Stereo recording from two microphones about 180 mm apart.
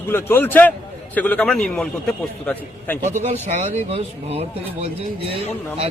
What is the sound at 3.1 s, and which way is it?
A man's voice, 40° right (ahead or behind).